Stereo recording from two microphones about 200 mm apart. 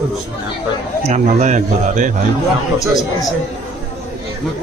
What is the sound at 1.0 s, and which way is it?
A man's voice, 35° right (ahead or behind).